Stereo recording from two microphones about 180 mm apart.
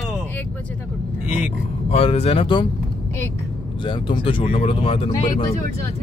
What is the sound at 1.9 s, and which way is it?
Speech, 35° left (ahead or behind).